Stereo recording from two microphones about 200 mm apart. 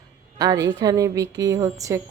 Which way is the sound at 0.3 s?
20° right (ahead or behind).